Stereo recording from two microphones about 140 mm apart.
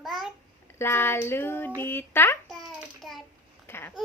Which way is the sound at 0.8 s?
15° left (ahead or behind).